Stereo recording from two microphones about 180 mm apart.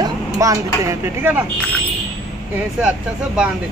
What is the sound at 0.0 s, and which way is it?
Speech, 20° right (ahead or behind).